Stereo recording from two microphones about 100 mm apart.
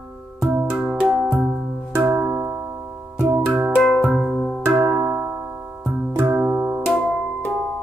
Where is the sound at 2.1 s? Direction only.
20° right (ahead or behind).